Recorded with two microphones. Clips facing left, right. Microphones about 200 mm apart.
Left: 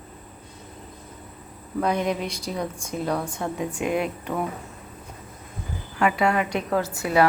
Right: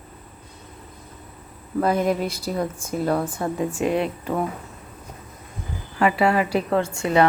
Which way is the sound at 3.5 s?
45° right (ahead or behind).